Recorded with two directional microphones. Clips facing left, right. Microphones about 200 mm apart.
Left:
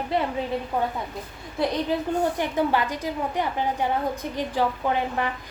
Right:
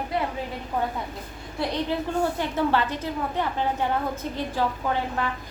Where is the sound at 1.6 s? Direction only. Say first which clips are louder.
Left 2 dB; 20° left (ahead or behind).